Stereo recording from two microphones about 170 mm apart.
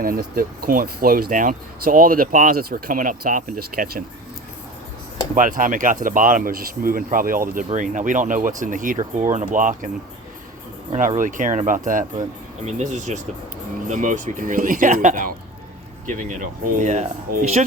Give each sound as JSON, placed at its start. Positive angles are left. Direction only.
{"t": 0.0, "sound": "speech", "side_deg": -60}
{"t": 5.3, "sound": "speech", "side_deg": -50}
{"t": 11.2, "sound": "speech", "side_deg": -50}